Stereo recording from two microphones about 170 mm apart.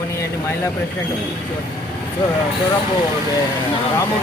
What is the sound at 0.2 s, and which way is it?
Speech, 15° left (ahead or behind).